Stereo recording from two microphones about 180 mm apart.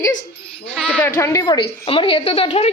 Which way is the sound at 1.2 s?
15° left (ahead or behind).